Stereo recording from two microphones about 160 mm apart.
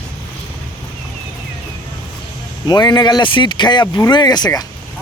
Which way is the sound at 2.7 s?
25° left (ahead or behind).